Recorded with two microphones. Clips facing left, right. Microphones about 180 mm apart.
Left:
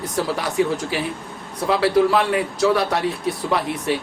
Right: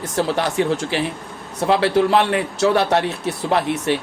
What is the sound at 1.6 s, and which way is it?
Speech, 65° right (ahead or behind).